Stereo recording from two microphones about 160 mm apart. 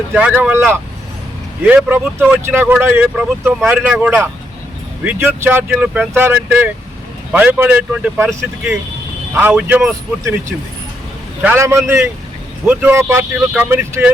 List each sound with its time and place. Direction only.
0.1 s speech: 10° right (ahead or behind)
9.3 s speech: 10° right (ahead or behind)
11.4 s speech: 15° right (ahead or behind)